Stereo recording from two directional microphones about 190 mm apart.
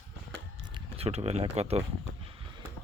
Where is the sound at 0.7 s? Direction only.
30° right (ahead or behind).